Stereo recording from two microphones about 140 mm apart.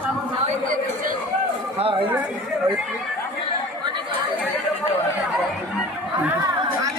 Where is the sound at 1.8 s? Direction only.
40° right (ahead or behind).